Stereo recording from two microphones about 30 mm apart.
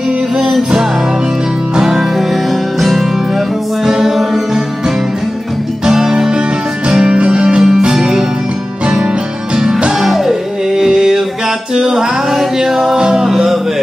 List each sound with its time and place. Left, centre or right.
1.8 s music: centre
5.9 s music: centre
9.9 s music: centre
11.7 s male singing: centre
13.1 s music: centre